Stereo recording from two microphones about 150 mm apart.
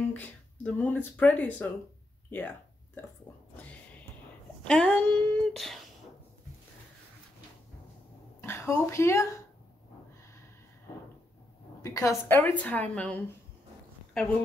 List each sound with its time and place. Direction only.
0.1 s speech: 10° left (ahead or behind)
2.3 s a sound: 10° left (ahead or behind)
4.6 s speech: 5° left (ahead or behind)
8.4 s a woman's voice: 20° left (ahead or behind)
11.8 s a woman's voice: 20° left (ahead or behind)